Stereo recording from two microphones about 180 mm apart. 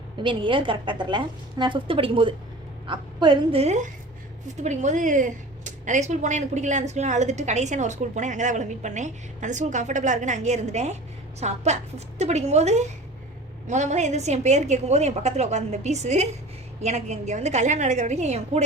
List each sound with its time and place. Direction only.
0.2 s a woman's voice: 25° right (ahead or behind)